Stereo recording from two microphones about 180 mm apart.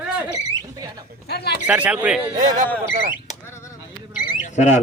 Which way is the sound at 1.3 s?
65° left (ahead or behind).